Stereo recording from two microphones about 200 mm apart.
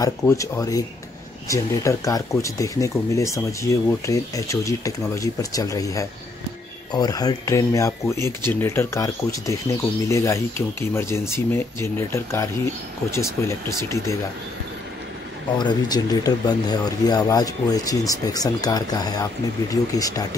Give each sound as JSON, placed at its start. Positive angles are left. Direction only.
{"t": 0.0, "sound": "speech", "side_deg": 15}
{"t": 15.5, "sound": "speech", "side_deg": 20}